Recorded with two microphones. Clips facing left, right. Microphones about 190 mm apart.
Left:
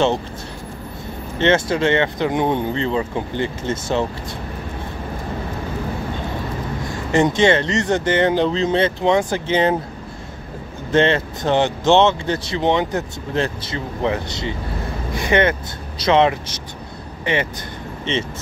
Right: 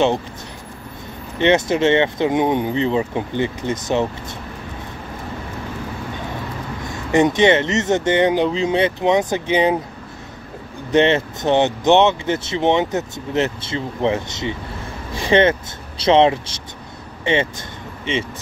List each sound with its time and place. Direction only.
1.4 s speech: 20° right (ahead or behind)
7.1 s speech: 20° right (ahead or behind)
10.9 s speech: 20° right (ahead or behind)
18.1 s speech: 10° right (ahead or behind)